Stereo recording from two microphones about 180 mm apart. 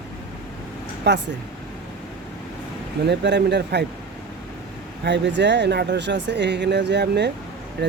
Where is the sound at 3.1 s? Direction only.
70° right (ahead or behind).